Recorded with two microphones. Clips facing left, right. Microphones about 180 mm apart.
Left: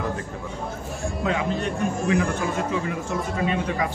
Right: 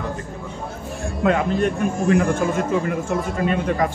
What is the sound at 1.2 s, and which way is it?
Speech, 60° right (ahead or behind).